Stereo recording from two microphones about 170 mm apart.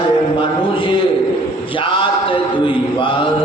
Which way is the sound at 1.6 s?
30° left (ahead or behind).